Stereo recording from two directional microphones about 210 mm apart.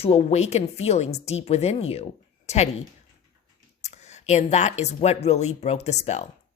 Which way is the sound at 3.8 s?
30° left (ahead or behind).